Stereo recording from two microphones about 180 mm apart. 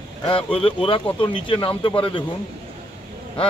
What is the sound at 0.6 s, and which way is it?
Speech, 30° left (ahead or behind).